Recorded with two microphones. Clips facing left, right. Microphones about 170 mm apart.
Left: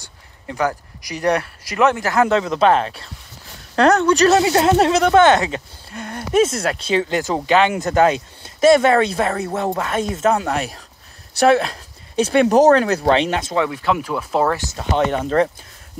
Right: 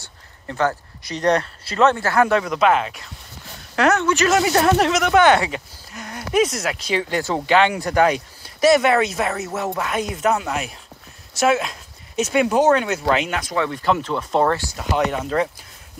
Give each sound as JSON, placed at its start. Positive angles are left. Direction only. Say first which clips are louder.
{"t": 0.0, "sound": "speech", "louder": "left 1 dB", "side_deg": 15}
{"t": 10.4, "sound": "speech", "louder": "left 4 dB", "side_deg": 40}
{"t": 13.7, "sound": "speech", "louder": "even", "side_deg": 5}
{"t": 14.6, "sound": "speech", "louder": "left 2 dB", "side_deg": 25}